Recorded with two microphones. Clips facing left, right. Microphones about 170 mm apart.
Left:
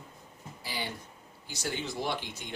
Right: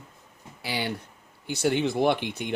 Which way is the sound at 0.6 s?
75° right (ahead or behind).